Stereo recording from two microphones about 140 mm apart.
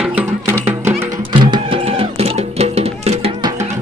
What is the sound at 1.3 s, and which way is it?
Music, 35° right (ahead or behind).